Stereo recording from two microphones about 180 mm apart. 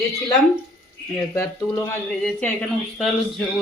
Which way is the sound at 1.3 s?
15° left (ahead or behind).